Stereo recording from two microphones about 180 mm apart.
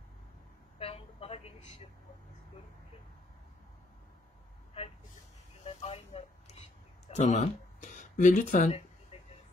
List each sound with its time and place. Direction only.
0.7 s vehicle: 35° left (ahead or behind)
5.7 s a sound: 35° left (ahead or behind)
7.1 s speech: 40° left (ahead or behind)